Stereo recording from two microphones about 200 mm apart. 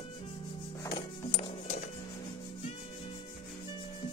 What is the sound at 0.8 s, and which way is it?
Music, 25° left (ahead or behind).